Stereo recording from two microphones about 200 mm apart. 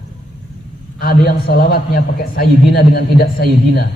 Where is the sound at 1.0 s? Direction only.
50° left (ahead or behind).